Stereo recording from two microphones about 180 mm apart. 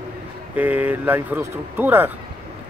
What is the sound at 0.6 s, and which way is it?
Speech, 10° right (ahead or behind).